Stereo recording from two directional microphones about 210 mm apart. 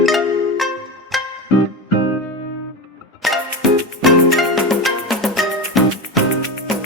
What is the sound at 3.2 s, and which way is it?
Music, centre (ahead or behind).